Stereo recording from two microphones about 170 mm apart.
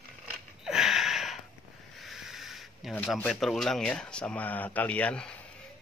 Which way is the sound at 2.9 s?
10° left (ahead or behind).